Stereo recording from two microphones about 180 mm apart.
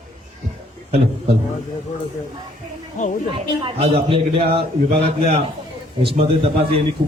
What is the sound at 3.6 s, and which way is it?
A man's voice, 30° right (ahead or behind).